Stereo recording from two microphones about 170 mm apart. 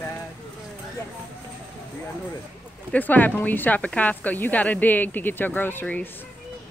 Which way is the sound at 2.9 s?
10° left (ahead or behind).